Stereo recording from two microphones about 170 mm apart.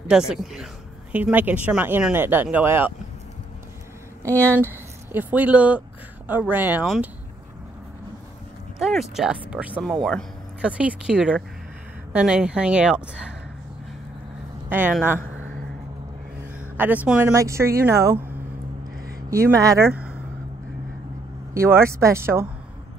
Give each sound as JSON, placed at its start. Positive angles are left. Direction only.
{"t": 0.3, "sound": "speech", "side_deg": -5}
{"t": 4.6, "sound": "speech", "side_deg": -10}
{"t": 8.7, "sound": "a sound", "side_deg": 0}
{"t": 9.1, "sound": "speech", "side_deg": -5}
{"t": 10.0, "sound": "a sound", "side_deg": 5}
{"t": 10.7, "sound": "speech", "side_deg": -5}
{"t": 14.7, "sound": "speech", "side_deg": -10}
{"t": 16.5, "sound": "speech", "side_deg": -10}
{"t": 19.3, "sound": "speech", "side_deg": -20}
{"t": 21.5, "sound": "speech", "side_deg": -15}